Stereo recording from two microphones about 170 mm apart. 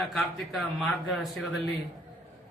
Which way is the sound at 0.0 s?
Centre (ahead or behind).